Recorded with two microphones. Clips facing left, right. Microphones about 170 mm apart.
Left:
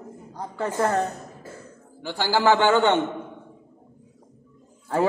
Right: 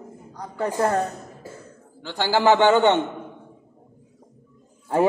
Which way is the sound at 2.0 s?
10° left (ahead or behind).